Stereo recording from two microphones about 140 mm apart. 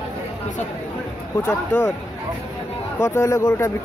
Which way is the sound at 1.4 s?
20° left (ahead or behind).